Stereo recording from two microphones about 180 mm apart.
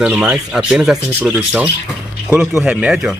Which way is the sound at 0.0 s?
5° right (ahead or behind).